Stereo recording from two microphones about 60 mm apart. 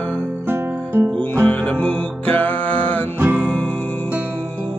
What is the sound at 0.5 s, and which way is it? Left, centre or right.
Guitar, right.